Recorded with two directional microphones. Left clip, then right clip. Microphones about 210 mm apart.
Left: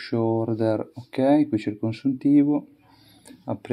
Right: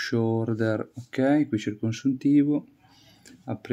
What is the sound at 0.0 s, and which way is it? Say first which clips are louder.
Speech: left 2 dB; 20° right (ahead or behind).